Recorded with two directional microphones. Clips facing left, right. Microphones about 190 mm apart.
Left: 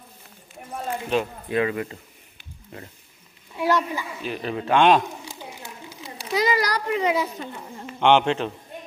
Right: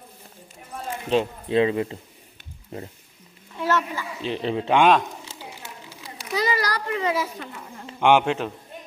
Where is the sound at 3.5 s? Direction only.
15° left (ahead or behind).